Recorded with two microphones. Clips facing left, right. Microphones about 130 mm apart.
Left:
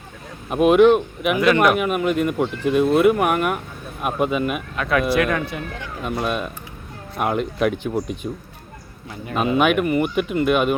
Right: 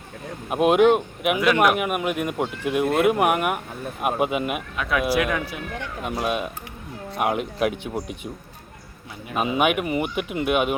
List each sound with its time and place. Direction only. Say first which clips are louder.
0.5 s speech: left 3 dB; 15° right (ahead or behind)
1.4 s speech: left 3 dB; 5° right (ahead or behind)
4.8 s speech: left 3 dB; 5° right (ahead or behind)
9.2 s speech: left 3 dB; 10° right (ahead or behind)